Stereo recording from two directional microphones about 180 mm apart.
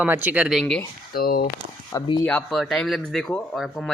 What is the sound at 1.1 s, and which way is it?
Speech, 55° left (ahead or behind).